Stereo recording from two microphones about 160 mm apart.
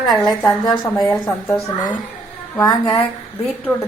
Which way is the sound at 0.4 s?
25° left (ahead or behind).